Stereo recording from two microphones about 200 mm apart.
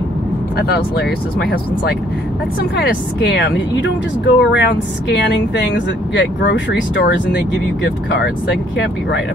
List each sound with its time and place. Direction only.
3.4 s speech: 60° left (ahead or behind)
6.1 s speech: 65° left (ahead or behind)